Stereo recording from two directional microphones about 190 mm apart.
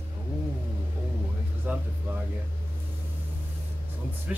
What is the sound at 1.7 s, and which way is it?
Speech, 10° right (ahead or behind).